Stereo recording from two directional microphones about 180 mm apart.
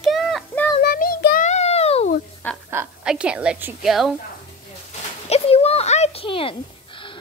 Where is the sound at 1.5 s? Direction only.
35° left (ahead or behind).